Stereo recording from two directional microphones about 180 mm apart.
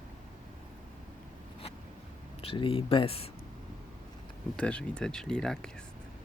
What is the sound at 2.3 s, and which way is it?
Speech, 30° left (ahead or behind).